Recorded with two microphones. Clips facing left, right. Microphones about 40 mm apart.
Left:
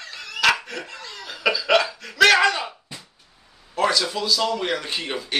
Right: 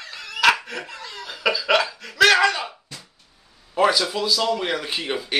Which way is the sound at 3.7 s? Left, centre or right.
Centre.